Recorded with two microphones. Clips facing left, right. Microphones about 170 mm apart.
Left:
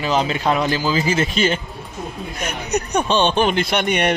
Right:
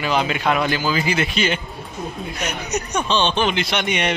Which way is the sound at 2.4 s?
55° left (ahead or behind).